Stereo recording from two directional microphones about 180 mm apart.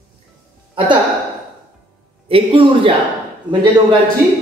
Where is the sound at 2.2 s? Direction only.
30° right (ahead or behind).